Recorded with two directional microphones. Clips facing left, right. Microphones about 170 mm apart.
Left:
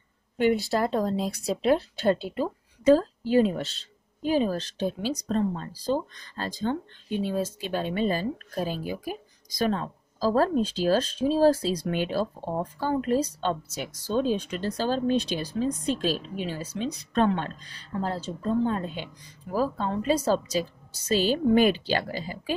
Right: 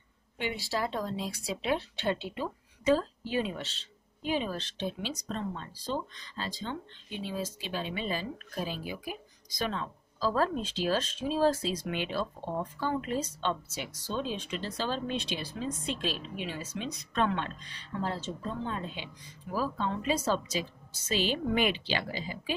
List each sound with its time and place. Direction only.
0.4 s speech: 45° left (ahead or behind)